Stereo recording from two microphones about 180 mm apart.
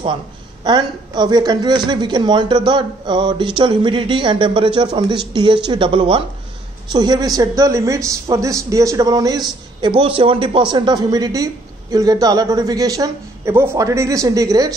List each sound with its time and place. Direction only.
0.7 s a woman's voice: 25° right (ahead or behind)